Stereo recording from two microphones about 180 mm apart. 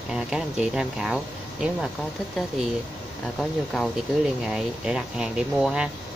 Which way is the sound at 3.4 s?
Centre (ahead or behind).